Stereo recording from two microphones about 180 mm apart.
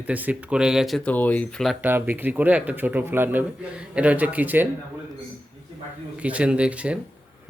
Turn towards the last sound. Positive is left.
turn(degrees=-5)  # may be behind; listen again after turning